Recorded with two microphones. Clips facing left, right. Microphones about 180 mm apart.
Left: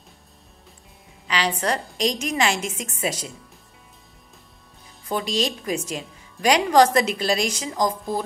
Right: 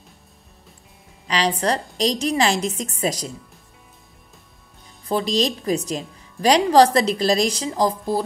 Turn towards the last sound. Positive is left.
turn(degrees=-35)  # may be behind; listen again after turning